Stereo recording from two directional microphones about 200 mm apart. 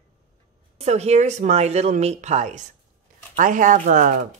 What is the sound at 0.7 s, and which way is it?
Speech, 30° right (ahead or behind).